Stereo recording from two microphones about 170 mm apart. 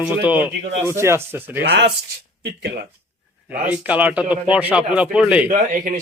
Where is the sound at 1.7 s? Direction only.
75° right (ahead or behind).